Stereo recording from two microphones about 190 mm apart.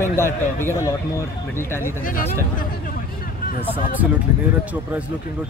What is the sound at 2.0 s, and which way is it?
Speech, 45° left (ahead or behind).